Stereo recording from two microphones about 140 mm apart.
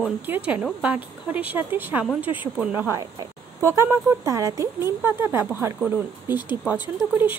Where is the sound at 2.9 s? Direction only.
25° right (ahead or behind).